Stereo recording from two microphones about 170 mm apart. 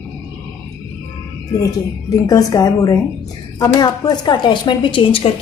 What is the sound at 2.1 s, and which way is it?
A woman's voice, 20° left (ahead or behind).